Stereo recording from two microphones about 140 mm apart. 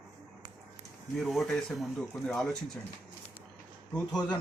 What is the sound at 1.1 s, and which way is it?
Speech, centre (ahead or behind).